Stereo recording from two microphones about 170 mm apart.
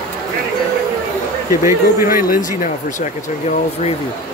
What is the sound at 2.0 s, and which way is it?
Speech, 55° left (ahead or behind).